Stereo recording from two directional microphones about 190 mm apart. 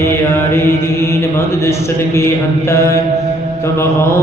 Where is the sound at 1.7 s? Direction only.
15° left (ahead or behind).